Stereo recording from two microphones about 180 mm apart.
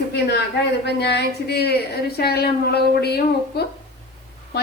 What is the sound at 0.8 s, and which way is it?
A woman's voice, 70° left (ahead or behind).